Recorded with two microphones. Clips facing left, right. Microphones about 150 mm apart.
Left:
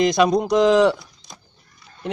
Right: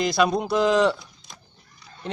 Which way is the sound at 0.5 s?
15° left (ahead or behind).